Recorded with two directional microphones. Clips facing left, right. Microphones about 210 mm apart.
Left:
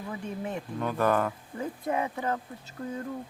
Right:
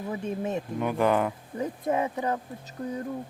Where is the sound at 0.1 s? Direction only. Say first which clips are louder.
Right 5 dB; 20° right (ahead or behind).